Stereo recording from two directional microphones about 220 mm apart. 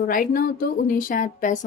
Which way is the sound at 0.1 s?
40° left (ahead or behind).